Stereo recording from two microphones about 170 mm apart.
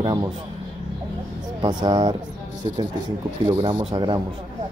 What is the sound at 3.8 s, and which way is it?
Speech, 25° right (ahead or behind).